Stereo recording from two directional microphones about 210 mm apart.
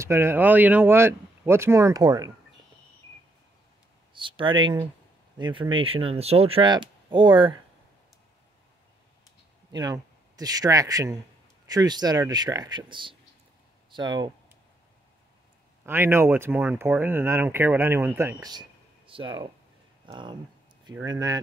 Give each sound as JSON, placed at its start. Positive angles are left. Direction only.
{"t": 0.0, "sound": "speech", "side_deg": -10}
{"t": 4.1, "sound": "speech", "side_deg": -25}
{"t": 9.7, "sound": "a man's voice", "side_deg": -20}
{"t": 15.8, "sound": "speech", "side_deg": -10}